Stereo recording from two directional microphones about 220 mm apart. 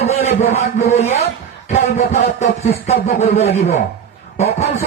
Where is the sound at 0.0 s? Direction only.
30° left (ahead or behind).